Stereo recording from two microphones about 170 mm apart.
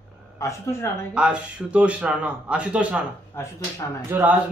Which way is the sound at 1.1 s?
5° right (ahead or behind).